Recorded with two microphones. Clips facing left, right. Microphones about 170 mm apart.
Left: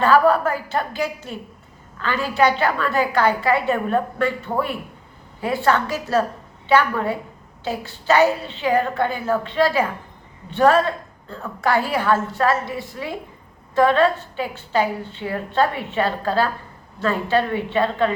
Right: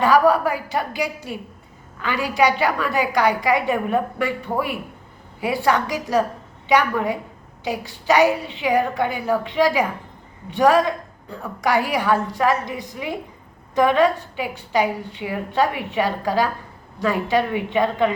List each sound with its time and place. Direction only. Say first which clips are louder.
0.0 s a woman's voice: even; 15° right (ahead or behind)